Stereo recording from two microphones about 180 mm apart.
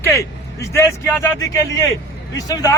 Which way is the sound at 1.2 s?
15° left (ahead or behind).